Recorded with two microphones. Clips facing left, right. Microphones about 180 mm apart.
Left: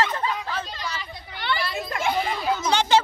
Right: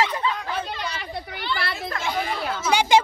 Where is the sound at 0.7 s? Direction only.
60° right (ahead or behind).